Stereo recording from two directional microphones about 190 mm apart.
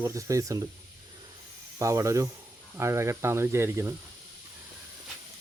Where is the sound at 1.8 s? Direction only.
15° right (ahead or behind).